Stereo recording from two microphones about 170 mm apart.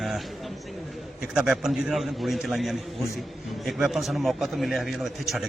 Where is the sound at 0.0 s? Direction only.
Centre (ahead or behind).